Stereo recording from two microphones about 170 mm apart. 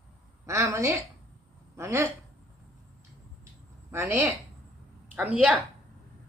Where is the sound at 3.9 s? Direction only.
15° right (ahead or behind).